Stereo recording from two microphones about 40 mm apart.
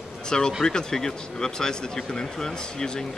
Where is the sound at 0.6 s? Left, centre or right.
Centre.